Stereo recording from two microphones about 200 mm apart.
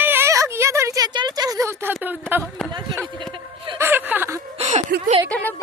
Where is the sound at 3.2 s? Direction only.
25° right (ahead or behind).